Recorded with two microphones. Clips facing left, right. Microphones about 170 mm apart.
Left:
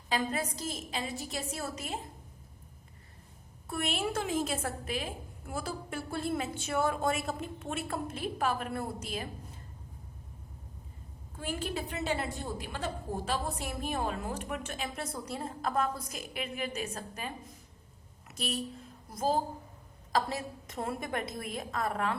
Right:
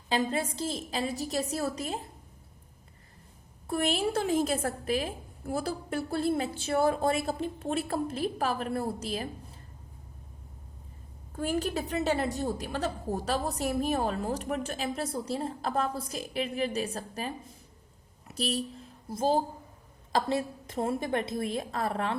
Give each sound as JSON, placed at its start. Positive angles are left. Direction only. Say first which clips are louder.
{"t": 0.1, "sound": "a woman's voice", "louder": "right 3 dB", "side_deg": -30}
{"t": 3.7, "sound": "a woman's voice", "louder": "right 5 dB", "side_deg": -35}
{"t": 11.3, "sound": "a woman's voice", "louder": "right 6 dB", "side_deg": -40}